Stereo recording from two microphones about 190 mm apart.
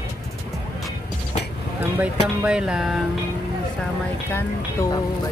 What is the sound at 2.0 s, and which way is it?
Speech, 5° right (ahead or behind).